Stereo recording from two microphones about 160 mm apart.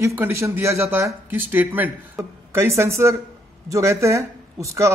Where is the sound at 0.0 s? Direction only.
15° right (ahead or behind).